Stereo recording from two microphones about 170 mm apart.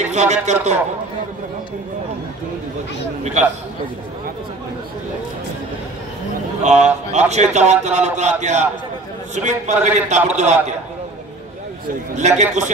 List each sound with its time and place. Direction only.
0.0 s speech: 40° right (ahead or behind)
6.6 s a man's voice: 40° right (ahead or behind)
12.2 s a man's voice: 40° right (ahead or behind)